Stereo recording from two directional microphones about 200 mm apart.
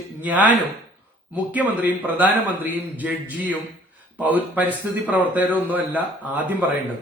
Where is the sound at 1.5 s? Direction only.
10° right (ahead or behind).